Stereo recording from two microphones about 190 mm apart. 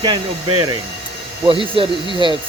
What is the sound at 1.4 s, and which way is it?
Speech, 25° right (ahead or behind).